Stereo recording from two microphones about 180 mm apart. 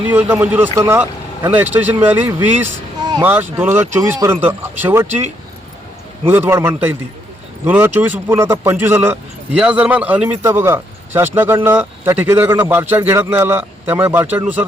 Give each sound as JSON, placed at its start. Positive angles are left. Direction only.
{"t": 0.3, "sound": "speech", "side_deg": -10}